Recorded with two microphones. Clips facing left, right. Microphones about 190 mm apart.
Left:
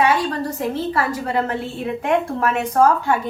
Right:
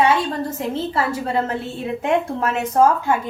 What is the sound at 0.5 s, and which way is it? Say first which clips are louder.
A woman's voice: left 1 dB; 25° right (ahead or behind).